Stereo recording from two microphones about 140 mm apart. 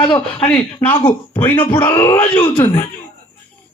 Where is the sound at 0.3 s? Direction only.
10° left (ahead or behind).